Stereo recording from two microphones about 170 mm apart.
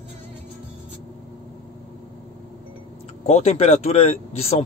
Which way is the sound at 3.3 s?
40° left (ahead or behind).